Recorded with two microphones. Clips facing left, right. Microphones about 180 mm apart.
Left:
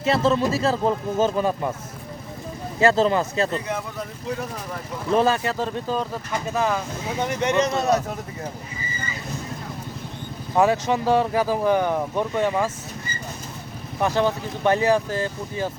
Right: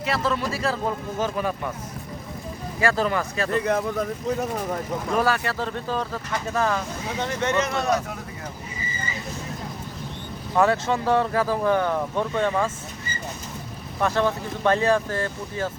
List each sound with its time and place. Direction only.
0.0 s speech: 25° left (ahead or behind)
2.8 s speech: 25° left (ahead or behind)
5.1 s speech: 20° left (ahead or behind)
10.5 s speech: 15° left (ahead or behind)
14.0 s speech: 15° left (ahead or behind)